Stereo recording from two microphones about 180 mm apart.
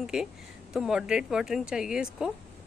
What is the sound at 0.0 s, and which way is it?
A woman's voice, 5° right (ahead or behind).